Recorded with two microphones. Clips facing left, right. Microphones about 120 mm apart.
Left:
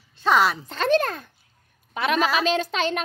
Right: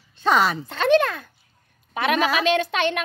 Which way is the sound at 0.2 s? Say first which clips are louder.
Even; centre (ahead or behind).